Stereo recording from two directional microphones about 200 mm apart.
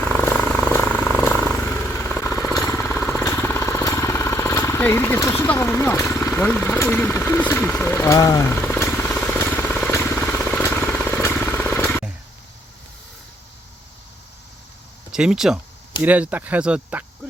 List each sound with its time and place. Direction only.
0.0 s vehicle: 5° left (ahead or behind)
15.1 s speech: 5° right (ahead or behind)